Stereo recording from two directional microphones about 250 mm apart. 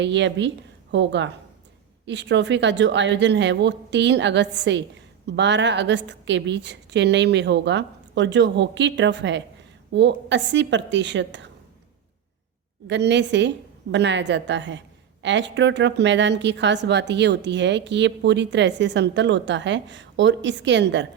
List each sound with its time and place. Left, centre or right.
0.0 s a woman's voice: right
12.9 s a woman's voice: right